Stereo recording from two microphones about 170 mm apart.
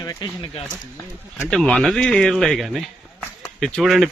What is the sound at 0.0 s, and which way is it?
Speech, 25° left (ahead or behind).